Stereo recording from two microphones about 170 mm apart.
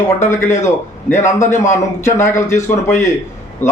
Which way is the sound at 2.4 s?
15° left (ahead or behind).